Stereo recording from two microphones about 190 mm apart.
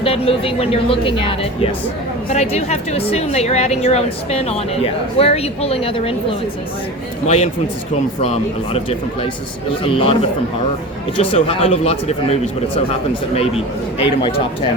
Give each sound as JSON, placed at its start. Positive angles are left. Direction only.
{"t": 0.0, "sound": "a woman's voice", "side_deg": 30}
{"t": 7.3, "sound": "a woman's voice", "side_deg": 35}
{"t": 14.2, "sound": "speech", "side_deg": 25}